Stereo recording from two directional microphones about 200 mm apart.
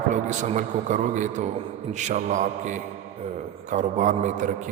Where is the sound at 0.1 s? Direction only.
35° right (ahead or behind).